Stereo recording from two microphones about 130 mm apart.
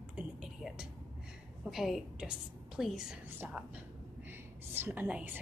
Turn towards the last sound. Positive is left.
turn(degrees=-10)  # may be behind; listen again after turning